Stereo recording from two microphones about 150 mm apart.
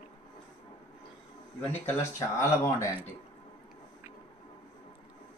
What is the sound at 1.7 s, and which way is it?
Speech, 20° left (ahead or behind).